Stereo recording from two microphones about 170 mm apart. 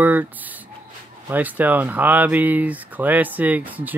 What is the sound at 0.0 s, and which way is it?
Speech, 10° right (ahead or behind).